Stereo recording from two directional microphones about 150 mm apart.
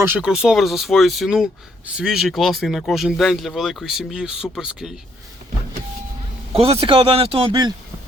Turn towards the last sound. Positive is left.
turn(degrees=-35)  # may be behind; listen again after turning